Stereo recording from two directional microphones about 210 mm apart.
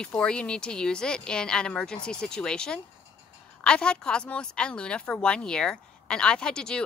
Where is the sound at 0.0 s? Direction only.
5° left (ahead or behind).